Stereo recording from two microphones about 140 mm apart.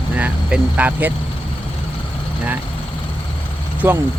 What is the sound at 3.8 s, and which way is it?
Speech, 15° right (ahead or behind).